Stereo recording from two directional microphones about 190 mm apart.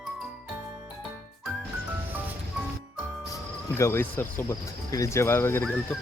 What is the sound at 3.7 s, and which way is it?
Speech, 15° left (ahead or behind).